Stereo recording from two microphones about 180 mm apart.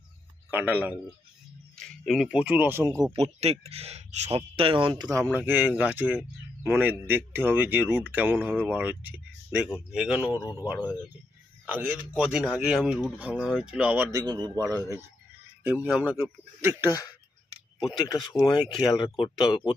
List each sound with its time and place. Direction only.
0.5 s speech: 10° right (ahead or behind)
3.1 s speech: 35° right (ahead or behind); by 10.3 s 5° right (ahead or behind)
10.3 s speech: 20° left (ahead or behind)
11.6 s speech: 5° right (ahead or behind)
14.3 s a man's voice: 20° right (ahead or behind)
15.6 s speech: 10° right (ahead or behind)
16.9 s speech: 20° left (ahead or behind)